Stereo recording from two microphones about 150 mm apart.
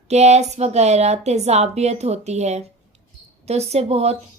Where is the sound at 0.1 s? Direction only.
45° right (ahead or behind).